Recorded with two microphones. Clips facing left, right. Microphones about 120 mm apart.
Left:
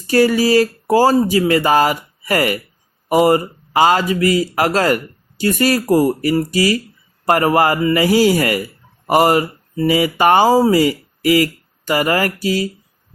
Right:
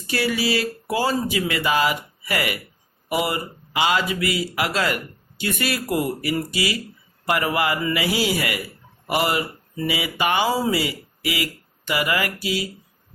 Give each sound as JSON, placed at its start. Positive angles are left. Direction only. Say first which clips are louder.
{"t": 0.1, "sound": "speech", "louder": "left 10 dB", "side_deg": 40}